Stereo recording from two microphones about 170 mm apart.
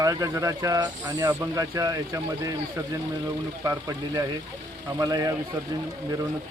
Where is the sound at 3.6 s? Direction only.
20° right (ahead or behind).